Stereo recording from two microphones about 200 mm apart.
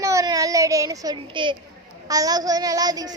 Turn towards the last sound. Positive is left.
turn(degrees=-20)  # may be behind; listen again after turning